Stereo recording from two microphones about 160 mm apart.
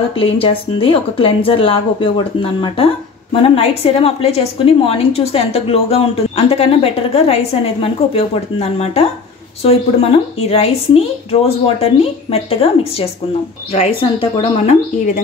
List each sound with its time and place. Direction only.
0.2 s a woman's voice: 35° left (ahead or behind)
13.7 s a woman's voice: 40° left (ahead or behind)